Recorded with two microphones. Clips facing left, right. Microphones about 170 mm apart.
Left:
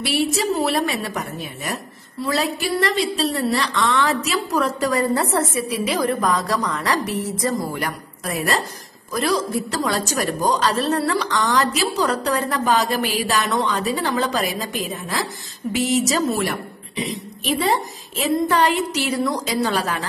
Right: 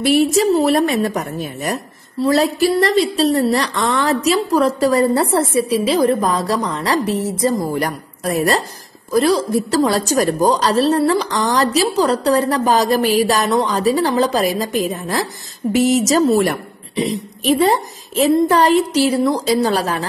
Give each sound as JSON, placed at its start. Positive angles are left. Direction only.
{"t": 0.0, "sound": "a woman's voice", "side_deg": -45}